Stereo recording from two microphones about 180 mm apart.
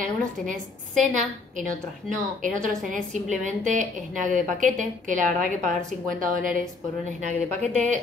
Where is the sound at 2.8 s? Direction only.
45° right (ahead or behind).